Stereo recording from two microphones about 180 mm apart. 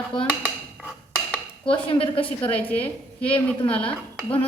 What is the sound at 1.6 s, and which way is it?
Speech, 30° left (ahead or behind).